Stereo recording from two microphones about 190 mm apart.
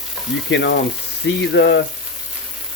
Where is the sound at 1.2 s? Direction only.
65° left (ahead or behind).